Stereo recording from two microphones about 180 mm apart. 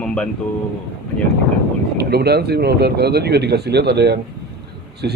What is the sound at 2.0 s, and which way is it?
A man's voice, 65° right (ahead or behind).